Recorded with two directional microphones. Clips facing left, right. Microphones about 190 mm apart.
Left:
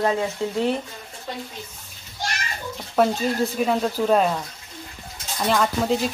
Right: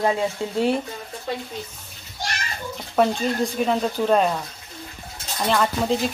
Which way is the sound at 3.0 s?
5° left (ahead or behind).